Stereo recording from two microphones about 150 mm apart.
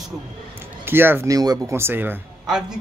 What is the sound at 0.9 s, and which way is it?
Speech, 15° right (ahead or behind).